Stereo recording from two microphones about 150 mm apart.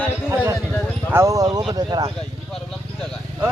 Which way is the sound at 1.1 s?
20° right (ahead or behind).